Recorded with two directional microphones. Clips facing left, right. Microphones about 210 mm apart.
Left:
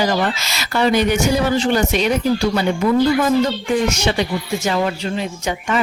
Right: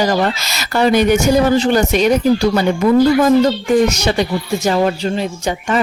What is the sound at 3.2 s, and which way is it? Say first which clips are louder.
A woman's voice: right 5 dB; 40° right (ahead or behind).